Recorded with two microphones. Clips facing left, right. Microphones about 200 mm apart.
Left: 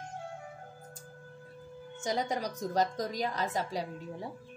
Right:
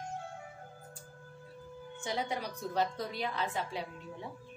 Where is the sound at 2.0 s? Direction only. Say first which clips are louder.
Left 4 dB; 40° left (ahead or behind).